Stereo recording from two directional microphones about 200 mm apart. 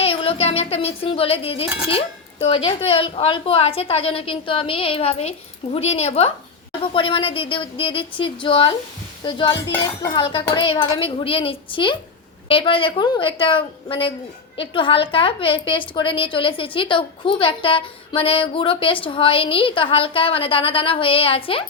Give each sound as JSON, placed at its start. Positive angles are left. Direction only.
{"t": 0.0, "sound": "a woman's voice", "side_deg": 30}